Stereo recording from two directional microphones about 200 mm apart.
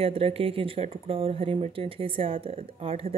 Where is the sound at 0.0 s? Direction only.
30° right (ahead or behind).